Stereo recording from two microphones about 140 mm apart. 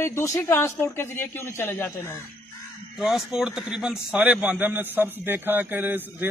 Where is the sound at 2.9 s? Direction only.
5° right (ahead or behind).